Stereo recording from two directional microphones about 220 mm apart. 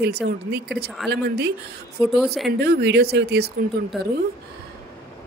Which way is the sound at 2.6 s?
50° right (ahead or behind).